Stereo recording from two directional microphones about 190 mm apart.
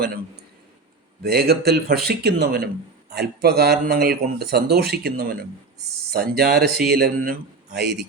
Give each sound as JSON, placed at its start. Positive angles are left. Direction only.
{"t": 1.2, "sound": "speech", "side_deg": -55}